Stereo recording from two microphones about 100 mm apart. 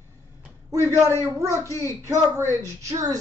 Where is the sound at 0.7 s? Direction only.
30° right (ahead or behind).